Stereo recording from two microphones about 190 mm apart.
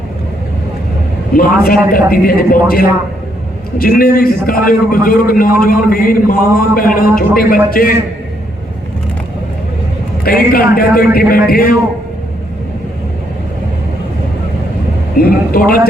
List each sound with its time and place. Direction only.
1.3 s a man's voice: 50° left (ahead or behind)
10.2 s a man's voice: 50° left (ahead or behind)
15.2 s a man's voice: 50° left (ahead or behind)